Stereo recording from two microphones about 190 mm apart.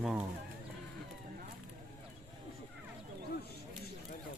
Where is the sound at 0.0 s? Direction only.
5° right (ahead or behind).